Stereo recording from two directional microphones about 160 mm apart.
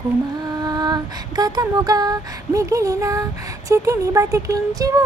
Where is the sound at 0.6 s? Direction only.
25° right (ahead or behind).